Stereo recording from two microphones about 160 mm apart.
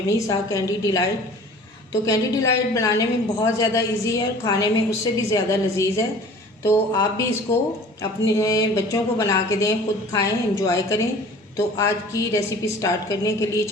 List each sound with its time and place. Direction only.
0.1 s a woman's voice: 20° left (ahead or behind)